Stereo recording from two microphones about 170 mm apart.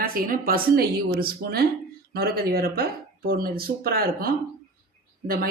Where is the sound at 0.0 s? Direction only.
60° right (ahead or behind).